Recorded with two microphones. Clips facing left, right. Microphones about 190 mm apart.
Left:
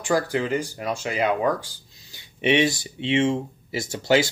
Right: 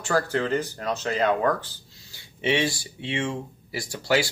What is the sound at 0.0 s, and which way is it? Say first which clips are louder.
Speech: left 2 dB; 15° left (ahead or behind).